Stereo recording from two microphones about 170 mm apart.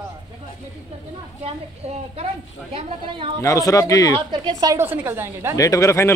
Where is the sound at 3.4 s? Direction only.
20° left (ahead or behind).